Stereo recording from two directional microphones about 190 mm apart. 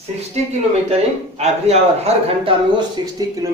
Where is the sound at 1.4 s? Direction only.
35° right (ahead or behind).